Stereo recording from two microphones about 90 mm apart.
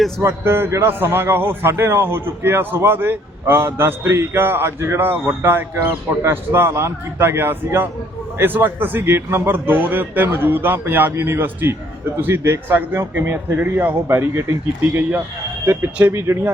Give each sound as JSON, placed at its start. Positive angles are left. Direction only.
{"t": 0.2, "sound": "a man's voice", "side_deg": -25}
{"t": 15.6, "sound": "a man's voice", "side_deg": -30}